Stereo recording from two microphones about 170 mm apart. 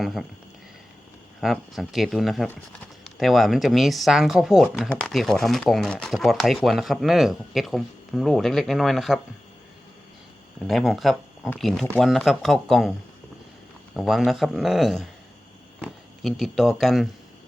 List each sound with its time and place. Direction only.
0.0 s speech: centre (ahead or behind)
1.4 s speech: centre (ahead or behind)
10.7 s speech: centre (ahead or behind)
13.9 s speech: centre (ahead or behind)